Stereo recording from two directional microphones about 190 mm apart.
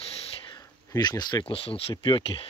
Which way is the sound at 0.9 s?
20° left (ahead or behind).